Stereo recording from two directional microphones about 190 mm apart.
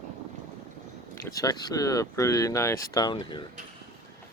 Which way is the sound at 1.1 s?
15° left (ahead or behind).